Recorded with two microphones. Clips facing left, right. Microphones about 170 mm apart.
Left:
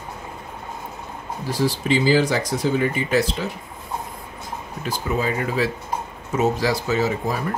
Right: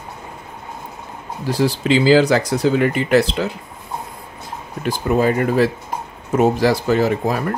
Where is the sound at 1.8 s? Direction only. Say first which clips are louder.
Right 6 dB; 90° right; by 3.4 s 70° right (ahead or behind).